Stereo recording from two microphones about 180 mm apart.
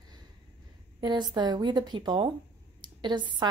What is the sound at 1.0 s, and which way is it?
A woman's voice, 25° right (ahead or behind).